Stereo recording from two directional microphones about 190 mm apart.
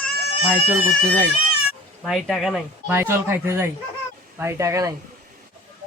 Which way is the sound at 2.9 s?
10° right (ahead or behind).